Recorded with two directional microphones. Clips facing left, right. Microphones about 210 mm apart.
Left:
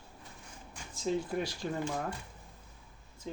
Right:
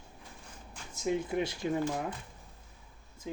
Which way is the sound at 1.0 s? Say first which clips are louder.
Right 2 dB; 20° right (ahead or behind).